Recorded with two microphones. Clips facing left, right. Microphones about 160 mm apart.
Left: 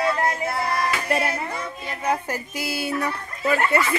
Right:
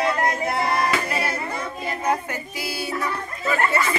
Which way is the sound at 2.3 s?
50° left (ahead or behind).